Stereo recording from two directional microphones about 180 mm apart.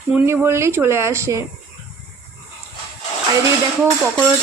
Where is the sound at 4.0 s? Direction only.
5° right (ahead or behind).